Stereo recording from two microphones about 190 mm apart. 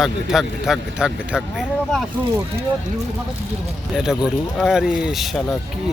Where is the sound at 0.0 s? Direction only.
5° right (ahead or behind).